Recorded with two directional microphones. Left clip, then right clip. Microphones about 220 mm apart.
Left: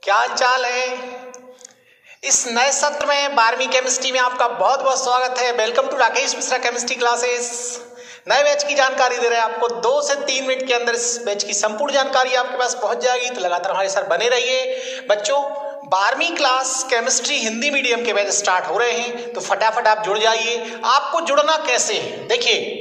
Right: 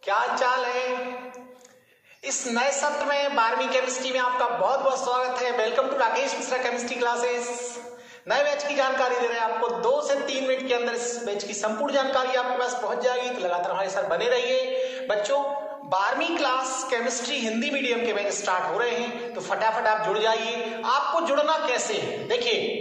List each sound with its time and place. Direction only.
0.0 s a man's voice: 50° left (ahead or behind)
2.2 s a man's voice: 50° left (ahead or behind)